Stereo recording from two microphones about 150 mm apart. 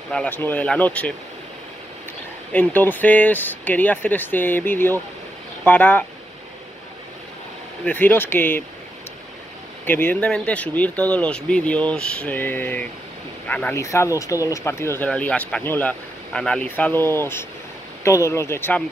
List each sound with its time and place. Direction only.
0.1 s speech: 10° left (ahead or behind)
2.5 s speech: 10° left (ahead or behind)
7.8 s speech: 10° left (ahead or behind)
9.8 s speech: 15° left (ahead or behind)